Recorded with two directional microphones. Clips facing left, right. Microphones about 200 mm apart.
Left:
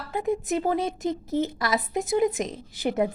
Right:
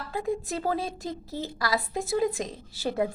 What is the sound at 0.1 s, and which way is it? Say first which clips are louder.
A woman's voice: left 4 dB; 20° left (ahead or behind).